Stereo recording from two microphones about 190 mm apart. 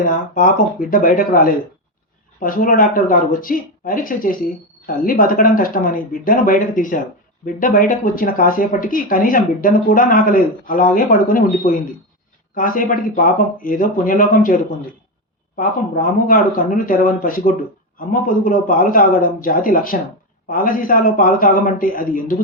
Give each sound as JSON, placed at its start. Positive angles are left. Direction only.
{"t": 0.0, "sound": "speech", "side_deg": 45}